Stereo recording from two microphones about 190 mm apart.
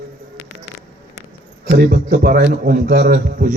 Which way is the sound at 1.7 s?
50° right (ahead or behind).